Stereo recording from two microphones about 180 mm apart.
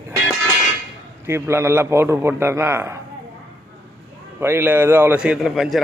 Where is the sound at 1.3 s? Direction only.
15° right (ahead or behind).